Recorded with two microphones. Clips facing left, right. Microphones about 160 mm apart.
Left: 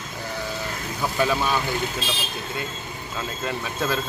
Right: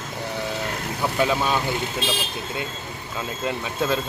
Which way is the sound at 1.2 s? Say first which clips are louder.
Right 1 dB; 15° right (ahead or behind).